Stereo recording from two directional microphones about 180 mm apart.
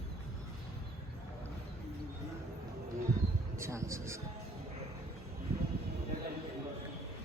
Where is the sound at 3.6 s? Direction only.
15° right (ahead or behind).